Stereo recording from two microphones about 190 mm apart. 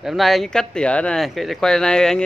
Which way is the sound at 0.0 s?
Centre (ahead or behind).